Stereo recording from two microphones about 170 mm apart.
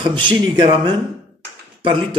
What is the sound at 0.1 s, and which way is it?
Speech, 25° right (ahead or behind).